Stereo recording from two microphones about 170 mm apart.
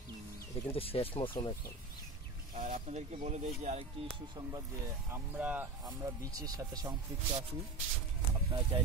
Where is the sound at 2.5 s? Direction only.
50° right (ahead or behind).